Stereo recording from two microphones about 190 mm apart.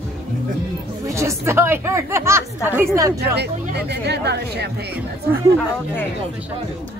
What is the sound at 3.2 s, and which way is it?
Speech, 60° right (ahead or behind).